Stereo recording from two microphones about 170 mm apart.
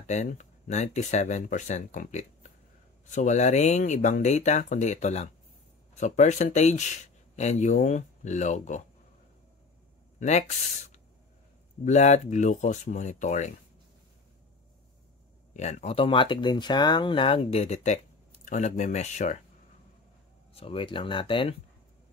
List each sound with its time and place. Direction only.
0.0 s speech: 45° left (ahead or behind)
10.1 s speech: 45° left (ahead or behind)
11.8 s speech: 45° left (ahead or behind)
15.5 s speech: 45° left (ahead or behind)
20.5 s speech: 30° left (ahead or behind)